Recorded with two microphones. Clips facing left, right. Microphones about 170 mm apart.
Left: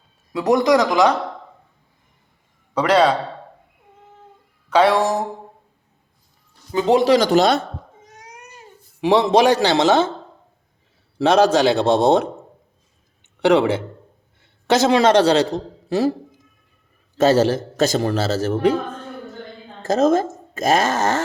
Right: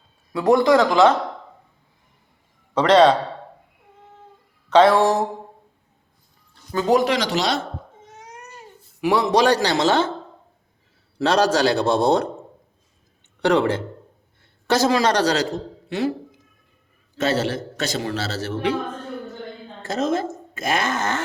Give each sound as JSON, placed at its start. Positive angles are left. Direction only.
{"t": 0.3, "sound": "a man's voice", "side_deg": 15}
{"t": 2.7, "sound": "a man's voice", "side_deg": 10}
{"t": 4.7, "sound": "a sound", "side_deg": 10}
{"t": 6.7, "sound": "speech", "side_deg": 25}
{"t": 7.1, "sound": "a man's voice", "side_deg": 50}
{"t": 9.0, "sound": "speech", "side_deg": 25}
{"t": 11.3, "sound": "speech", "side_deg": 20}
{"t": 13.4, "sound": "speech", "side_deg": 20}
{"t": 14.7, "sound": "speech", "side_deg": 25}
{"t": 17.2, "sound": "a man's voice", "side_deg": 40}
{"t": 19.8, "sound": "speech", "side_deg": 45}